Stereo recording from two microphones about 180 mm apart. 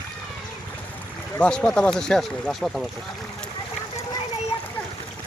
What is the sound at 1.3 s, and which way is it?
Speech, 10° left (ahead or behind).